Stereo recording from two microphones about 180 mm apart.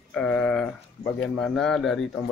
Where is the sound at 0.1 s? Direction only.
5° left (ahead or behind).